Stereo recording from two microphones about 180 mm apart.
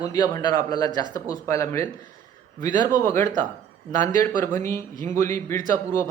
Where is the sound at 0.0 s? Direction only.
20° left (ahead or behind).